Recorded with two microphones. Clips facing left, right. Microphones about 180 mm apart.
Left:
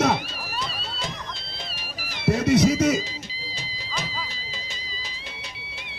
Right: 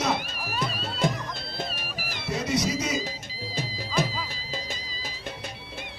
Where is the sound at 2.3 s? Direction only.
55° left (ahead or behind).